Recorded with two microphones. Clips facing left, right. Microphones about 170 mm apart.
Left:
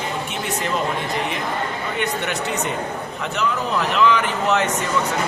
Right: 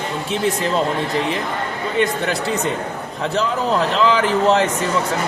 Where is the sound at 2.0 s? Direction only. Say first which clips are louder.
Right 6 dB; 30° right (ahead or behind).